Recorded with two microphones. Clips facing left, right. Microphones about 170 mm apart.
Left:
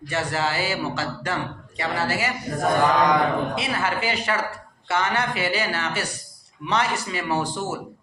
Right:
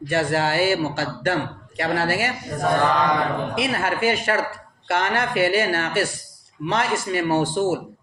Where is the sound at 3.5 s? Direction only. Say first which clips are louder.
Right 3 dB; 55° right (ahead or behind).